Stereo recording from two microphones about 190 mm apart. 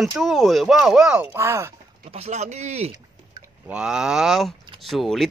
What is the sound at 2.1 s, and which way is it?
Speech, 35° right (ahead or behind).